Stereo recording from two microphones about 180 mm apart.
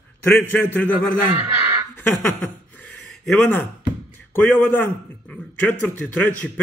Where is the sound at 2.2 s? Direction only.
10° left (ahead or behind).